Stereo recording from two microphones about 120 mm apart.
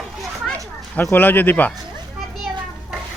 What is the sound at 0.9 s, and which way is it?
Speech, 15° left (ahead or behind).